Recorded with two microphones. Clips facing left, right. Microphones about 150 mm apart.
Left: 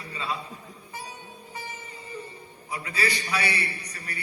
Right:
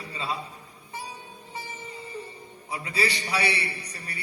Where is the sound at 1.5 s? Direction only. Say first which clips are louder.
Right 2 dB; 30° right (ahead or behind).